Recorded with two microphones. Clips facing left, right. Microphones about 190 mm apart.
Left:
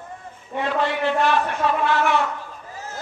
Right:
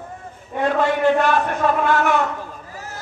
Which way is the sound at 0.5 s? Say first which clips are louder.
Right 4 dB; 45° right (ahead or behind).